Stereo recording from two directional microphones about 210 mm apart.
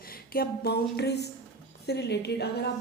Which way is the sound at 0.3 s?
50° left (ahead or behind).